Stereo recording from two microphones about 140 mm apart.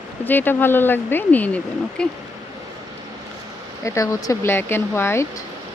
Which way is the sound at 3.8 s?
20° left (ahead or behind).